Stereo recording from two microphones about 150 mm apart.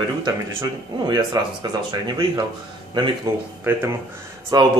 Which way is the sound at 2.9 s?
30° right (ahead or behind).